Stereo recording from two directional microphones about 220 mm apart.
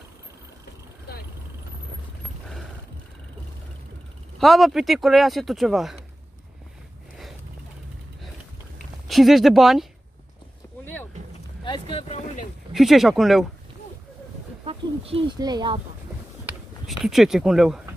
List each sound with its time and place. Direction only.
4.4 s speech: centre (ahead or behind)
9.0 s speech: centre (ahead or behind)
11.6 s boat: 20° left (ahead or behind)
12.7 s speech: centre (ahead or behind)
14.6 s speech: 25° right (ahead or behind)
16.4 s a sound: centre (ahead or behind)